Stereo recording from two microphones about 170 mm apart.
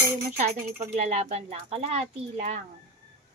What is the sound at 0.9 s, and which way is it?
Speech, 40° right (ahead or behind).